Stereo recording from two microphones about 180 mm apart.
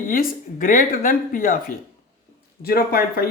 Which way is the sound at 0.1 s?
50° left (ahead or behind).